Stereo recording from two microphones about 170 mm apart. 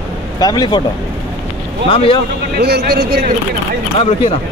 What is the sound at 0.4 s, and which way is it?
Speech, 25° left (ahead or behind).